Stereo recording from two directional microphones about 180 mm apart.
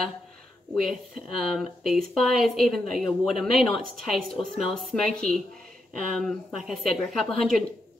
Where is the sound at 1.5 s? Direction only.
Centre (ahead or behind).